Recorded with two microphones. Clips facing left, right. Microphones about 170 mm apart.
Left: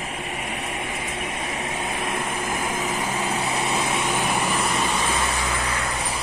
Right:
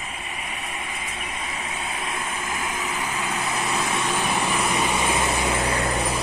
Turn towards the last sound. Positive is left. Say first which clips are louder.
# right 3 dB
turn(degrees=-30)  # may be behind; listen again after turning